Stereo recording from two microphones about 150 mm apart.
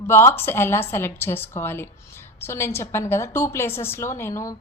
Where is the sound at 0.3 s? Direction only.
15° left (ahead or behind).